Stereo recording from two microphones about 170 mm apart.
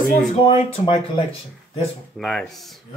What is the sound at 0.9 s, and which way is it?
Speech, 35° left (ahead or behind).